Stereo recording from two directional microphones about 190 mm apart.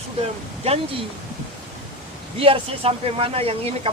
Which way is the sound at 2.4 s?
30° right (ahead or behind).